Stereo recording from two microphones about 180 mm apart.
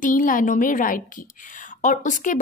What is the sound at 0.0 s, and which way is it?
A woman's voice, 45° left (ahead or behind).